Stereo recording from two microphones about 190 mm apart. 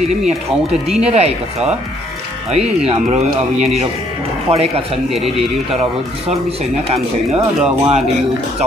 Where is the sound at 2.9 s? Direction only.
35° right (ahead or behind).